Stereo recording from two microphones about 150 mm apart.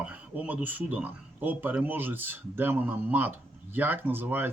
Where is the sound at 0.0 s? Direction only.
10° right (ahead or behind).